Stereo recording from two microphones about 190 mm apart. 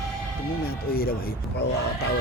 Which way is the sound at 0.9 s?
50° left (ahead or behind).